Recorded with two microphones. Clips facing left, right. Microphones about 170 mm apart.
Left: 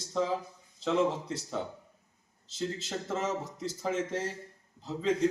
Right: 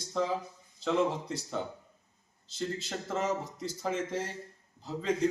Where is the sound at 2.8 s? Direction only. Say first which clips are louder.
Even; centre (ahead or behind).